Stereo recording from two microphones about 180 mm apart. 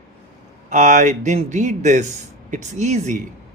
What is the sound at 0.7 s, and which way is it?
Speech, 45° right (ahead or behind).